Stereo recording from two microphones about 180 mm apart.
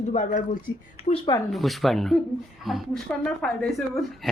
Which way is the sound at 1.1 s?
25° left (ahead or behind).